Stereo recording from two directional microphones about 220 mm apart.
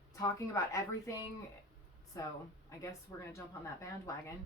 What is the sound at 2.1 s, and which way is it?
Speech, 15° left (ahead or behind).